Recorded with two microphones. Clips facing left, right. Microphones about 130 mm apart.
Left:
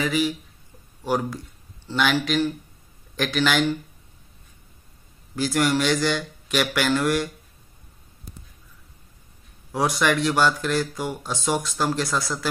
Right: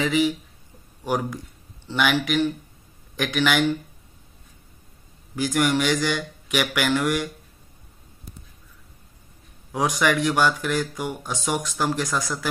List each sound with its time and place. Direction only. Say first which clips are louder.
0.0 s speech: right 2 dB; 20° right (ahead or behind)
5.3 s speech: even; 15° right (ahead or behind)
9.8 s speech: even; 15° right (ahead or behind)